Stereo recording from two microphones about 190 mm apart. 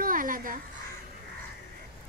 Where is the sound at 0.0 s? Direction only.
45° right (ahead or behind).